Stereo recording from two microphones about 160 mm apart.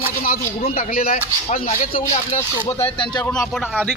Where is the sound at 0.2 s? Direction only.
65° left (ahead or behind).